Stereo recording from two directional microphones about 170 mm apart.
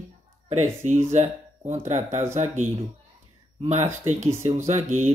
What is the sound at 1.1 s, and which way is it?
Speech, 40° right (ahead or behind).